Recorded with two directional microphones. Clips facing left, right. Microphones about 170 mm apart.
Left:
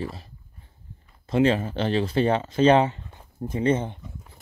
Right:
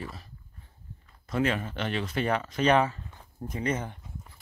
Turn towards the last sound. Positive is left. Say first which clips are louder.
# left 8 dB
turn(degrees=25)  # may be behind; listen again after turning